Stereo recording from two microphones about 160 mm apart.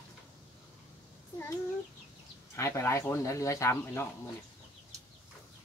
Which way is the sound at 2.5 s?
15° left (ahead or behind).